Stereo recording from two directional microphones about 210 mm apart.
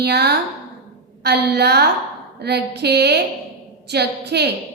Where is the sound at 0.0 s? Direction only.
50° right (ahead or behind).